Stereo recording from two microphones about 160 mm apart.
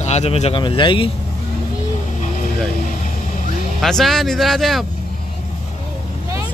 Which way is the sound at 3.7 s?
Centre (ahead or behind).